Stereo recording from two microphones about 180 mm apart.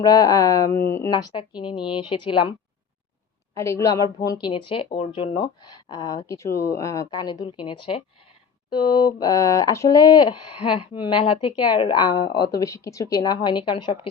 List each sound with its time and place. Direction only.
0.0 s speech: 20° left (ahead or behind)
1.3 s speech: 25° left (ahead or behind)
3.5 s speech: 15° left (ahead or behind)